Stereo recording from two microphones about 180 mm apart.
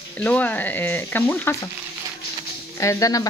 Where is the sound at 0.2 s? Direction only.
10° left (ahead or behind).